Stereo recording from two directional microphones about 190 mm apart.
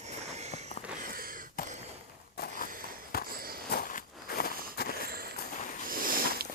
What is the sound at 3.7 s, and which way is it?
Walk, 45° left (ahead or behind).